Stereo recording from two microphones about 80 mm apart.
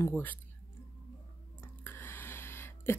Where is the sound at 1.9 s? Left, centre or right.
Left.